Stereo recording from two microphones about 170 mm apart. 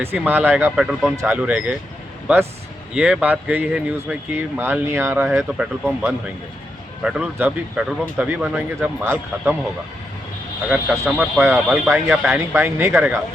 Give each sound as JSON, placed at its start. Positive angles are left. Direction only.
{"t": 0.0, "sound": "speech", "side_deg": -10}
{"t": 1.1, "sound": "speech", "side_deg": -15}
{"t": 10.7, "sound": "speech", "side_deg": -10}